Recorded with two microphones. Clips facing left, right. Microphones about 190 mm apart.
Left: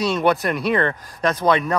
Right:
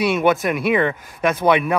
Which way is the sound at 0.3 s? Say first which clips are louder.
Right 2 dB; centre (ahead or behind).